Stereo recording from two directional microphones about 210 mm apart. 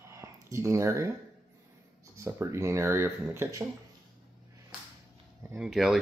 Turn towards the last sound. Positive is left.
turn(degrees=0)  # may be behind; listen again after turning